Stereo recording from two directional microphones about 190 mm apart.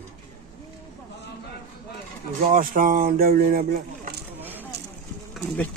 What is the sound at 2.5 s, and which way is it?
Speech, 45° right (ahead or behind).